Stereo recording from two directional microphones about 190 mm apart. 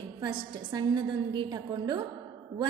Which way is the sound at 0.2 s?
20° right (ahead or behind).